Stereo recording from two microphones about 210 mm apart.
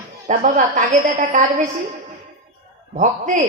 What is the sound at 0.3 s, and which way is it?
A woman's voice, 35° right (ahead or behind).